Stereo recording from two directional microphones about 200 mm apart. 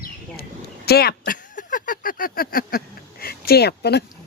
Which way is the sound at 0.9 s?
50° left (ahead or behind).